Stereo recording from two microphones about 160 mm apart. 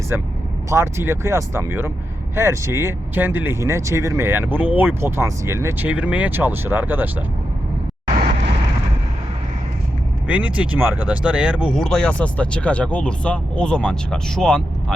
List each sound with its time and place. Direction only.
0.1 s speech: 10° right (ahead or behind)
10.2 s speech: 10° right (ahead or behind)
11.7 s speech: 5° left (ahead or behind)